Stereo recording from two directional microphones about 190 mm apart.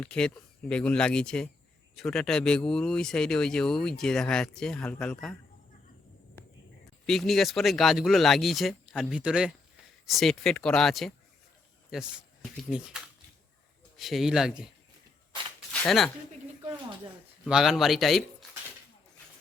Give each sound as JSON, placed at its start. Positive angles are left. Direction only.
{"t": 0.0, "sound": "speech", "side_deg": 5}
{"t": 7.0, "sound": "speech", "side_deg": 0}
{"t": 15.7, "sound": "speech", "side_deg": 5}
{"t": 17.4, "sound": "speech", "side_deg": 0}